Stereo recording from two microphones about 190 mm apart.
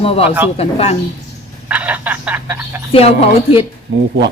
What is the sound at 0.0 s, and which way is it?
Speech, 30° left (ahead or behind).